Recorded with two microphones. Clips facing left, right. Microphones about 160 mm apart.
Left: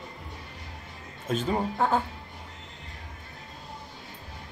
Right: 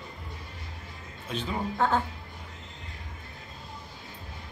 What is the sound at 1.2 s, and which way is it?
Speech, 45° left (ahead or behind).